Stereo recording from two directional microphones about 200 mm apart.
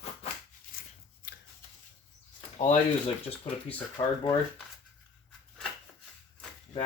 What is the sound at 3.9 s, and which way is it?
Speech, 25° left (ahead or behind).